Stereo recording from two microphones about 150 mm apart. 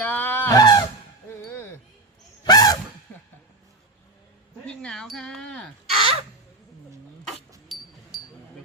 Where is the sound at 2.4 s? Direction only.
25° left (ahead or behind).